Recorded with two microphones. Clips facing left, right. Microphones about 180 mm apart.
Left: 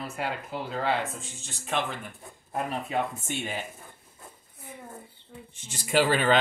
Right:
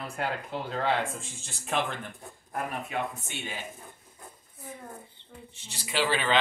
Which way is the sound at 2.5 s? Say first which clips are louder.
Left 3 dB; 25° left (ahead or behind).